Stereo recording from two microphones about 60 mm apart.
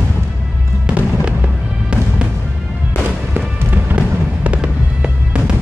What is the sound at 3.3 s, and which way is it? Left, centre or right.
Music, right.